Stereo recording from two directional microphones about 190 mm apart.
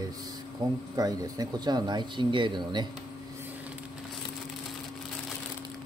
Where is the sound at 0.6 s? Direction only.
20° right (ahead or behind).